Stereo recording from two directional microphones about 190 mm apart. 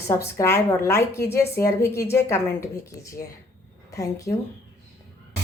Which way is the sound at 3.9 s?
15° left (ahead or behind).